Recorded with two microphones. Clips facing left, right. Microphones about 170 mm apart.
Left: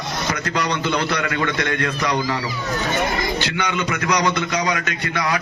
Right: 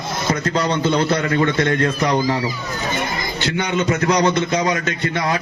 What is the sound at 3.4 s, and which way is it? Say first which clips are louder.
A man's voice: right 3 dB; 25° right (ahead or behind).